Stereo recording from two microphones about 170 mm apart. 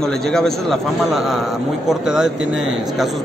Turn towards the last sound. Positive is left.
turn(degrees=0)  # may be behind; listen again after turning